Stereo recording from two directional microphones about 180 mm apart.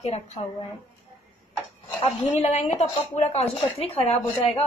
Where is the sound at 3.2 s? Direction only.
40° left (ahead or behind).